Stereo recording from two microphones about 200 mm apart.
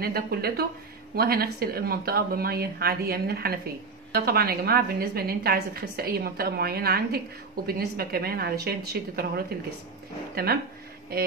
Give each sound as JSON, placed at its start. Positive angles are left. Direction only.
{"t": 0.0, "sound": "a woman's voice", "side_deg": -50}